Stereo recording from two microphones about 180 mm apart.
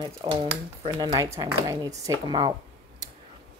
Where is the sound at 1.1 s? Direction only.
20° right (ahead or behind).